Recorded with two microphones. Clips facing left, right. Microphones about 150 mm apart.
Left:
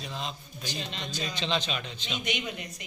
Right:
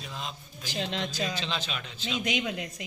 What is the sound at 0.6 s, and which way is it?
Speech, 90° right.